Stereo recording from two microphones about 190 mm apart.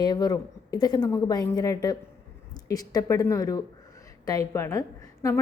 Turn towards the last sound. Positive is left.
turn(degrees=15)  # may be behind; listen again after turning